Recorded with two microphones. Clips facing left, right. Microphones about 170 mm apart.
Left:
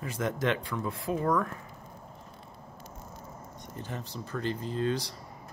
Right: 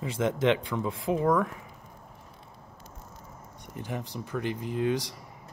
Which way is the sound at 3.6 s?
15° right (ahead or behind).